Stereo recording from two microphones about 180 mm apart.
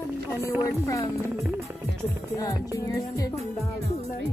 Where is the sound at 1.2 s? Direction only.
15° right (ahead or behind).